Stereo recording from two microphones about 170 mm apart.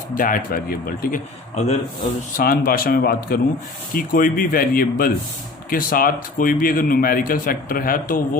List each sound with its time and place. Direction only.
0.2 s a man's voice: 55° left (ahead or behind)
1.5 s a man's voice: 40° left (ahead or behind)
2.3 s a man's voice: 60° left (ahead or behind)